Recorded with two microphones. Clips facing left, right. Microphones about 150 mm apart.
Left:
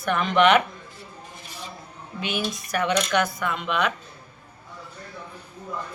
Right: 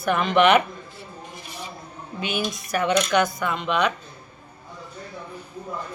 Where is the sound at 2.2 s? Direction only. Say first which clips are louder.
Right 1 dB; centre (ahead or behind).